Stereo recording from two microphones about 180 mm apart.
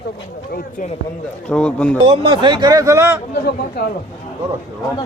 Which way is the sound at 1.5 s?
5° left (ahead or behind).